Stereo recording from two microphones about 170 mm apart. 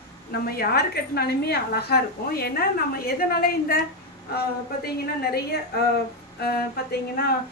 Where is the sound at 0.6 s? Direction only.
65° left (ahead or behind).